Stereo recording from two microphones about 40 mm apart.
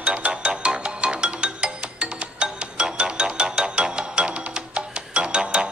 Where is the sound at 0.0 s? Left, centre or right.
Right.